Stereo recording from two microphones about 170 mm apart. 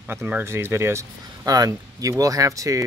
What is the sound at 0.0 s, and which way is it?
Speech, 10° right (ahead or behind).